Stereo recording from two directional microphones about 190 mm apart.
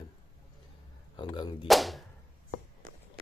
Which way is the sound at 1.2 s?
25° left (ahead or behind).